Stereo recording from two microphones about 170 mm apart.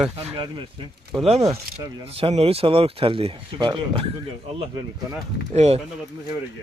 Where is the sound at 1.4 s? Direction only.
25° right (ahead or behind).